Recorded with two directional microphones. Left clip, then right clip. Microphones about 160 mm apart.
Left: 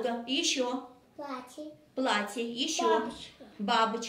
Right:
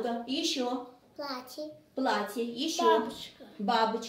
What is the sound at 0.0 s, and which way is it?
Speech, 40° right (ahead or behind).